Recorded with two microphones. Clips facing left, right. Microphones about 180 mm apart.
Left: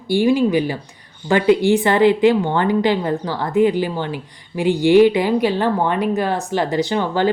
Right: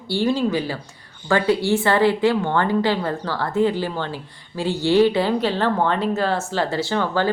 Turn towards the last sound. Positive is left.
turn(degrees=15)  # may be behind; listen again after turning